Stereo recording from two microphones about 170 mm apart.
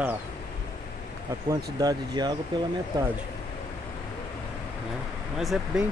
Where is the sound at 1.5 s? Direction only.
20° right (ahead or behind).